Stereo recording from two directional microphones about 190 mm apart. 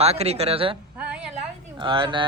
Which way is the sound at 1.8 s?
25° right (ahead or behind).